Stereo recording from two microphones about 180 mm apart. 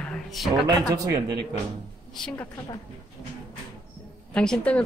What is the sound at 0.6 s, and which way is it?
Speech, 20° right (ahead or behind).